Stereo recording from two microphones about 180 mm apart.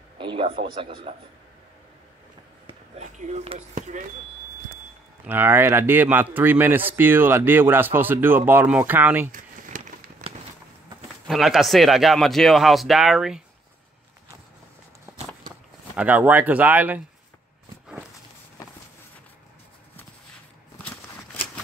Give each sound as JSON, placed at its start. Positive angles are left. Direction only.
{"t": 0.2, "sound": "speech", "side_deg": -30}
{"t": 3.0, "sound": "speech", "side_deg": -40}
{"t": 5.2, "sound": "a man's voice", "side_deg": -10}
{"t": 10.2, "sound": "walk", "side_deg": -35}
{"t": 11.2, "sound": "speech", "side_deg": 0}
{"t": 16.0, "sound": "a man's voice", "side_deg": -10}
{"t": 20.7, "sound": "walk", "side_deg": 10}